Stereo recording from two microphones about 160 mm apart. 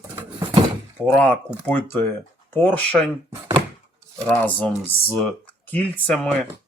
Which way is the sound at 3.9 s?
5° left (ahead or behind).